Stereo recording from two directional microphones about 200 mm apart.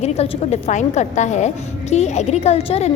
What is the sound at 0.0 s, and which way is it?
A woman's voice, 35° left (ahead or behind).